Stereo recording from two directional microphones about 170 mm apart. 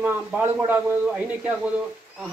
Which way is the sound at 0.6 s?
10° right (ahead or behind).